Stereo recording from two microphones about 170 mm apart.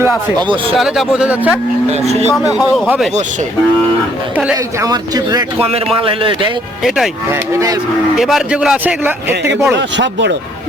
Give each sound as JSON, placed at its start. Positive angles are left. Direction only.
{"t": 0.7, "sound": "speech", "side_deg": 0}
{"t": 1.9, "sound": "speech", "side_deg": -40}
{"t": 2.3, "sound": "speech", "side_deg": 0}
{"t": 4.8, "sound": "a man's voice", "side_deg": -20}
{"t": 5.5, "sound": "speech", "side_deg": -35}
{"t": 6.8, "sound": "speech", "side_deg": 0}
{"t": 7.3, "sound": "a man's voice", "side_deg": -20}
{"t": 8.1, "sound": "speech", "side_deg": 0}
{"t": 9.7, "sound": "speech", "side_deg": -90}